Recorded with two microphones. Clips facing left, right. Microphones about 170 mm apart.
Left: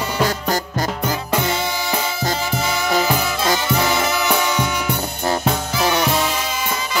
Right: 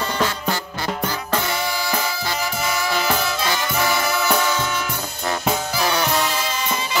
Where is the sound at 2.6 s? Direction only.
20° left (ahead or behind).